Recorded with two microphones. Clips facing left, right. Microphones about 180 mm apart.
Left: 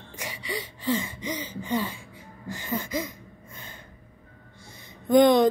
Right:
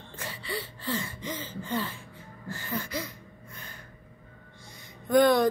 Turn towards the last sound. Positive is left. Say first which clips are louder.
# left 4 dB
turn(degrees=20)  # may be behind; listen again after turning